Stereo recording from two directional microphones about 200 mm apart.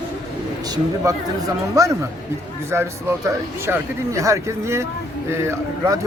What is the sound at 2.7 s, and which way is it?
Speech, 15° right (ahead or behind).